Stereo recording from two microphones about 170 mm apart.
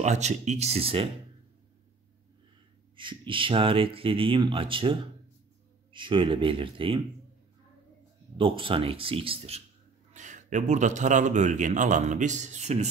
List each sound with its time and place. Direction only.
0.0 s speech: 40° right (ahead or behind)
3.0 s speech: 30° right (ahead or behind)
5.9 s speech: 30° right (ahead or behind)
8.4 s speech: 30° right (ahead or behind)
10.1 s speech: 45° right (ahead or behind)